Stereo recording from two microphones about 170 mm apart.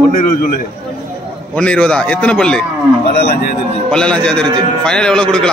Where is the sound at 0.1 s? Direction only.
55° left (ahead or behind).